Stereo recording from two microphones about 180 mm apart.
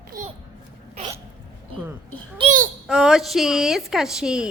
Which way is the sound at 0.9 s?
35° right (ahead or behind).